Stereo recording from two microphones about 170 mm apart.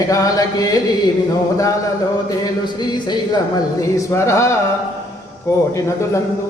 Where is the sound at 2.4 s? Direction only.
25° left (ahead or behind).